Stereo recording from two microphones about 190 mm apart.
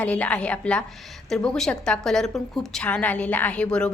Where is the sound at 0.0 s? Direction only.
5° left (ahead or behind).